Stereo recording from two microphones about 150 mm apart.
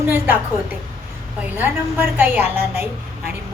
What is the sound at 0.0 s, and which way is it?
Speech, 15° right (ahead or behind).